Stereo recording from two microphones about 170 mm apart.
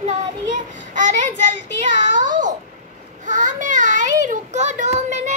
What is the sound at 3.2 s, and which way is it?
A child's voice, 45° right (ahead or behind).